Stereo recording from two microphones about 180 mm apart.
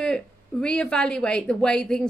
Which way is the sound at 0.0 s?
5° left (ahead or behind).